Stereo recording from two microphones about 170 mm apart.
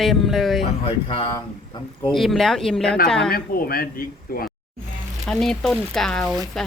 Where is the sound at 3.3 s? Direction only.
60° left (ahead or behind).